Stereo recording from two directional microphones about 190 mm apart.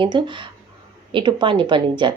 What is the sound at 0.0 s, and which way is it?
Speech, 25° right (ahead or behind).